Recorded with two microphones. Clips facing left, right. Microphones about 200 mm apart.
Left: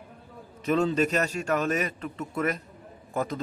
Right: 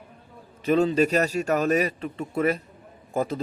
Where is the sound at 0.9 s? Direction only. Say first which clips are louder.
Right 4 dB; 35° right (ahead or behind).